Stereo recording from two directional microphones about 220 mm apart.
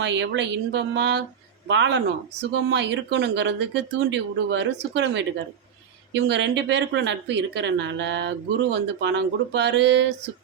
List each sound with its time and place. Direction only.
0.0 s a woman's voice: 55° right (ahead or behind)